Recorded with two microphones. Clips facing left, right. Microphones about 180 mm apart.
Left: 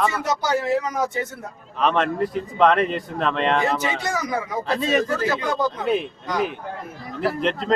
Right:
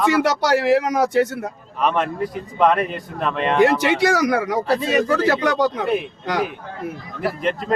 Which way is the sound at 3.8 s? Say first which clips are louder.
Right 8 dB; 75° right (ahead or behind).